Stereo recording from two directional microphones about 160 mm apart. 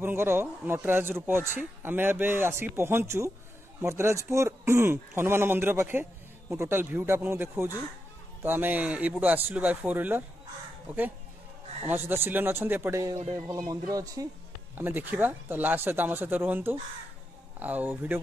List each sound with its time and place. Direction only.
0.0 s speech: 15° right (ahead or behind)
11.9 s speech: 15° right (ahead or behind)